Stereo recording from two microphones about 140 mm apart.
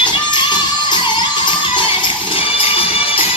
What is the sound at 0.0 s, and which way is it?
Music, 35° left (ahead or behind).